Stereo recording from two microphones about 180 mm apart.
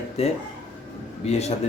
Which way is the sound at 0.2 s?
35° left (ahead or behind).